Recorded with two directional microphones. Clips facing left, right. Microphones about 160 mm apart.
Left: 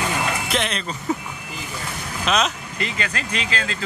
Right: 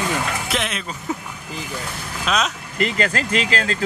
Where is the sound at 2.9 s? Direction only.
40° right (ahead or behind).